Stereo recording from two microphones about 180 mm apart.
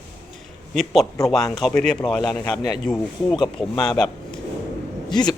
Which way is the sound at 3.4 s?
25° left (ahead or behind).